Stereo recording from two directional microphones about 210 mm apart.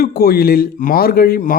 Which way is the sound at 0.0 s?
45° left (ahead or behind).